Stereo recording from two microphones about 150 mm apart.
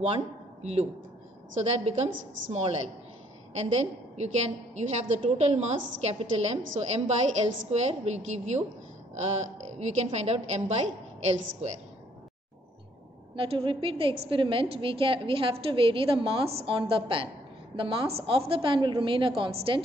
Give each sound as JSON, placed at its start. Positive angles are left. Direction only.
{"t": 0.0, "sound": "a man's voice", "side_deg": -45}
{"t": 2.5, "sound": "a woman's voice", "side_deg": -45}
{"t": 13.4, "sound": "a woman's voice", "side_deg": -35}